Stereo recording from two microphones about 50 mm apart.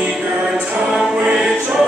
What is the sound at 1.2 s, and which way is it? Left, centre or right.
Music, centre.